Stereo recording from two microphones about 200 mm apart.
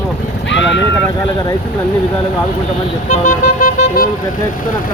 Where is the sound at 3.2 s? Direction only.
40° left (ahead or behind).